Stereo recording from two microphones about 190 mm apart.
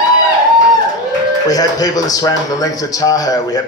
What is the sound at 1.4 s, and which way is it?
Speech, 20° left (ahead or behind).